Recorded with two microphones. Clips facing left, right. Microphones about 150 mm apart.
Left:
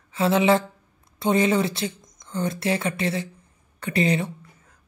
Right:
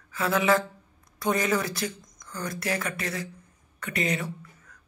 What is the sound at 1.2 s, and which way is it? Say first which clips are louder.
Speech: left 5 dB; 25° left (ahead or behind).